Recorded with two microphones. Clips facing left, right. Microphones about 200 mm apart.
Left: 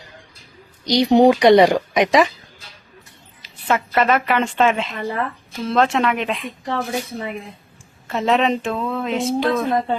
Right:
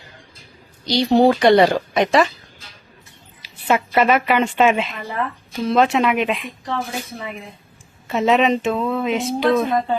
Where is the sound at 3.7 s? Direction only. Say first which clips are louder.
Right 2 dB; 10° right (ahead or behind).